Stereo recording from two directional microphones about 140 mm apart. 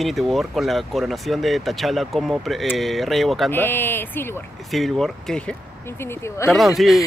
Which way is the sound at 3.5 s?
15° left (ahead or behind).